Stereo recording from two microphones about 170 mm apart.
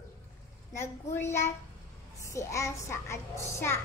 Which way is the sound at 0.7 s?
15° left (ahead or behind).